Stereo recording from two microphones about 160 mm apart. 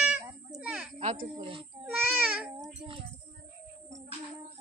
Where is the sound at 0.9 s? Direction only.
40° right (ahead or behind).